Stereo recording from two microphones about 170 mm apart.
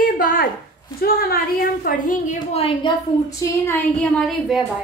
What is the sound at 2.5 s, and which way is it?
Speech, 35° left (ahead or behind).